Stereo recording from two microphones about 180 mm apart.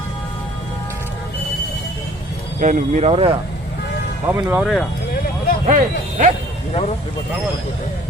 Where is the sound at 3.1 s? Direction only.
30° right (ahead or behind).